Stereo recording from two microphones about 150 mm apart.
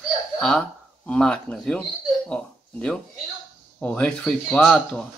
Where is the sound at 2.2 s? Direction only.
5° left (ahead or behind).